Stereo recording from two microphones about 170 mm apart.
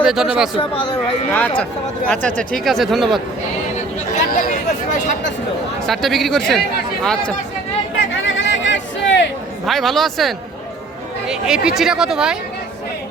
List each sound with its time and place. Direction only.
0.0 s speech: 5° right (ahead or behind)
0.5 s speech: 30° left (ahead or behind)
1.3 s speech: 10° left (ahead or behind)
5.8 s speech: centre (ahead or behind)
8.1 s a sound: 90° left
9.6 s speech: centre (ahead or behind)